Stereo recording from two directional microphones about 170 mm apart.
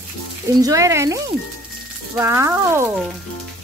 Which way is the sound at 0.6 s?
20° right (ahead or behind).